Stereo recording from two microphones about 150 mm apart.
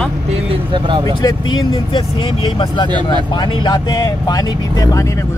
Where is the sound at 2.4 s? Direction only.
30° left (ahead or behind).